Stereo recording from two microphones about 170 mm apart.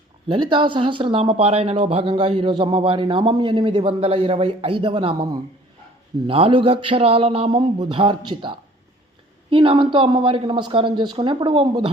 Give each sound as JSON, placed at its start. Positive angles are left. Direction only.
{"t": 0.3, "sound": "speech", "side_deg": -30}
{"t": 6.2, "sound": "speech", "side_deg": -30}